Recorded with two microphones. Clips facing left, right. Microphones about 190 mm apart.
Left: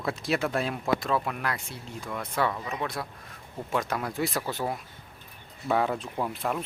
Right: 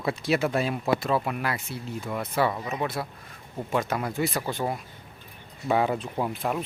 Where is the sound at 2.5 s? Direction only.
20° right (ahead or behind).